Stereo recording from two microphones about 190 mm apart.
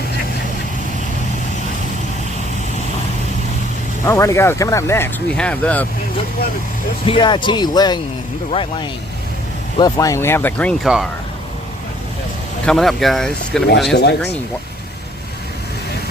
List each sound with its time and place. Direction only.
4.0 s speech: 15° left (ahead or behind)
7.0 s speech: 25° left (ahead or behind); by 10.8 s 10° left (ahead or behind)
12.6 s speech: centre (ahead or behind)
13.9 s speech: 60° left (ahead or behind)